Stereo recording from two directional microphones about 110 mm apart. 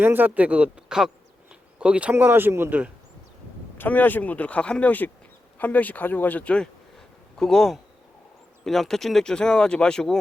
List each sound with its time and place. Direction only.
0.0 s speech: 15° right (ahead or behind)
3.8 s speech: 15° left (ahead or behind)